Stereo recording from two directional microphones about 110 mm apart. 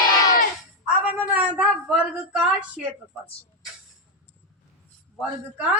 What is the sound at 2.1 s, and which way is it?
Speech, 10° right (ahead or behind).